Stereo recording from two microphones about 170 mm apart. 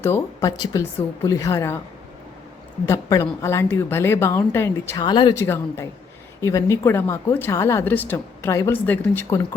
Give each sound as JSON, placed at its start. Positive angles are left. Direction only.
{"t": 0.0, "sound": "speech", "side_deg": 20}
{"t": 2.8, "sound": "speech", "side_deg": 20}
{"t": 5.0, "sound": "speech", "side_deg": 30}
{"t": 5.3, "sound": "speech", "side_deg": 15}